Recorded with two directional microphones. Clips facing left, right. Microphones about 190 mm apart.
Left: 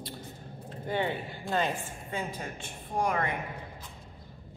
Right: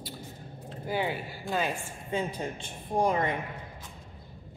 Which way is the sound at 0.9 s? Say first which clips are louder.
Even; 5° right (ahead or behind).